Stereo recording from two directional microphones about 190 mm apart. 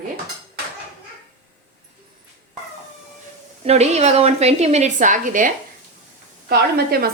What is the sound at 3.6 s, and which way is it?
A woman's voice, 35° right (ahead or behind).